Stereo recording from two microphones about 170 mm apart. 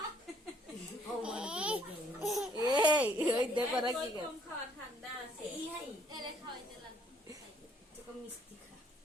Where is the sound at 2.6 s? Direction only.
25° right (ahead or behind).